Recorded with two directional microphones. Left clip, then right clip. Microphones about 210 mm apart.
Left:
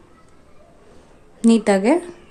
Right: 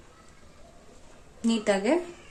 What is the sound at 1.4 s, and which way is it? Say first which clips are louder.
Speech: left 9 dB; 35° left (ahead or behind).